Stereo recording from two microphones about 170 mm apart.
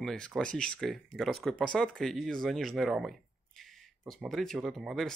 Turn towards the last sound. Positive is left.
turn(degrees=0)  # may be behind; listen again after turning